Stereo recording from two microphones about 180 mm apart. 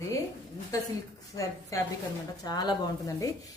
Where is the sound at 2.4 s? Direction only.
20° left (ahead or behind).